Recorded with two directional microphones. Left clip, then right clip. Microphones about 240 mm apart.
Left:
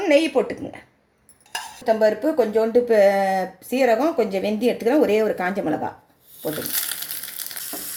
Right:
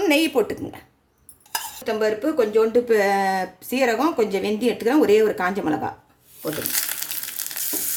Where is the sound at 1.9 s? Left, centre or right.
Centre.